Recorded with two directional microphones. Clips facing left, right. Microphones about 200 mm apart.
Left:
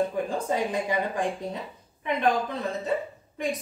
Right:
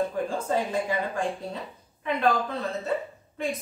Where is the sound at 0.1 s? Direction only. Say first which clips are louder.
Even; 15° left (ahead or behind).